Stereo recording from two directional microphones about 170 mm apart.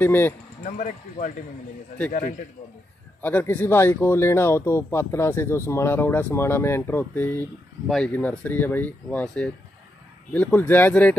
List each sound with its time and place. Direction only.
0.0 s speech: 10° left (ahead or behind)
0.7 s speech: 45° left (ahead or behind)
3.2 s speech: 10° left (ahead or behind)